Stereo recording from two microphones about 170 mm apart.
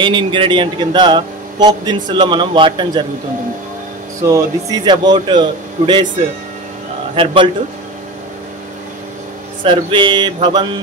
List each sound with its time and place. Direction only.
0.0 s a man's voice: 30° right (ahead or behind)
4.2 s a man's voice: 20° right (ahead or behind)
7.2 s a man's voice: 30° right (ahead or behind)
9.6 s a man's voice: 30° right (ahead or behind)